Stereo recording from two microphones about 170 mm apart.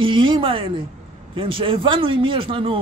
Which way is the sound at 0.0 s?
30° right (ahead or behind).